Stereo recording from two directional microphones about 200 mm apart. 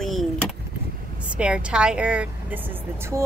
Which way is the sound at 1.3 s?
5° right (ahead or behind).